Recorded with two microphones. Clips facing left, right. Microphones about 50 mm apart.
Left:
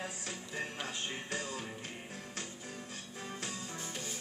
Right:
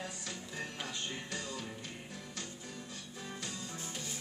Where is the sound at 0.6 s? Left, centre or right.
Left.